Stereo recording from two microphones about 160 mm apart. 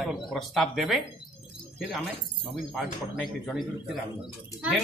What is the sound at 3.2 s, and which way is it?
Speech, centre (ahead or behind).